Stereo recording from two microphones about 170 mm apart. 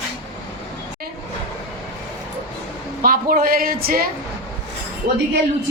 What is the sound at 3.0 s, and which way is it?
A man's voice, 60° right (ahead or behind).